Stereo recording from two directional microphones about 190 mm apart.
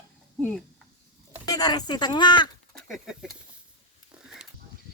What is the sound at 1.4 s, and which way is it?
Speech, 20° left (ahead or behind).